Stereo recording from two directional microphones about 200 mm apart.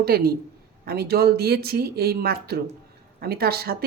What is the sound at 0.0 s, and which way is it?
Speech, 50° right (ahead or behind).